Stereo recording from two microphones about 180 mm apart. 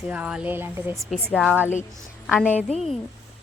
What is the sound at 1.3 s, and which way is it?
Speech, centre (ahead or behind).